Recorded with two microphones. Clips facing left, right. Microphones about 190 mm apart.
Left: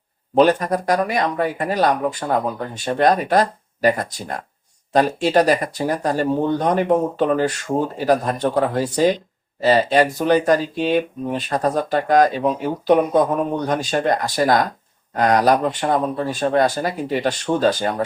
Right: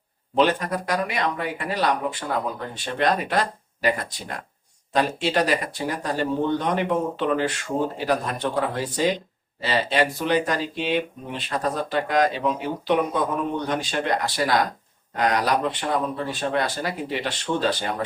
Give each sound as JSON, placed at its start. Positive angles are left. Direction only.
{"t": 0.3, "sound": "speech", "side_deg": 40}